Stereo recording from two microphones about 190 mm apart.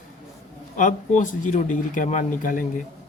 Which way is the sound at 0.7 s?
40° left (ahead or behind).